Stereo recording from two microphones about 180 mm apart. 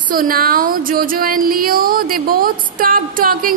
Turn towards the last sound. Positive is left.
turn(degrees=-50)  # may be behind; listen again after turning